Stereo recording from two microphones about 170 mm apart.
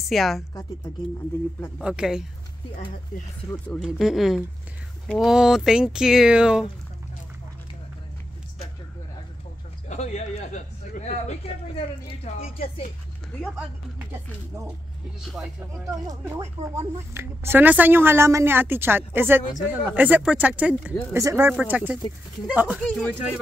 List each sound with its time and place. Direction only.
0.1 s speech: centre (ahead or behind)
1.8 s speech: 5° right (ahead or behind)
3.6 s speech: centre (ahead or behind)
9.8 s a man's voice: 40° left (ahead or behind)
15.2 s speech: centre (ahead or behind)
16.1 s a woman's voice: 20° right (ahead or behind)
22.8 s speech: 5° left (ahead or behind)